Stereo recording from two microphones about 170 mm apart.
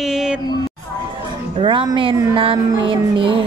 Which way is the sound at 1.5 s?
30° right (ahead or behind).